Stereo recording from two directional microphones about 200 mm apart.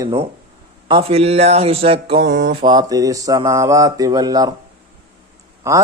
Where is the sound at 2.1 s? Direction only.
55° right (ahead or behind).